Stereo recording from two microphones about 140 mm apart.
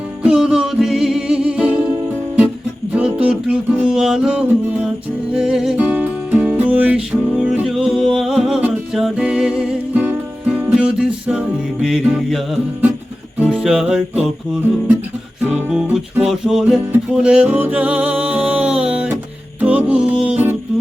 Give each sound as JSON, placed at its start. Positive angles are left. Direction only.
{"t": 0.2, "sound": "music", "side_deg": -5}
{"t": 13.4, "sound": "music", "side_deg": -5}